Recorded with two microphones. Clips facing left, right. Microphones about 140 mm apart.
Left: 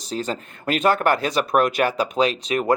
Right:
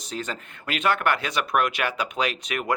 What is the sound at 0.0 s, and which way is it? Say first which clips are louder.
Speech: left 6 dB; 35° left (ahead or behind).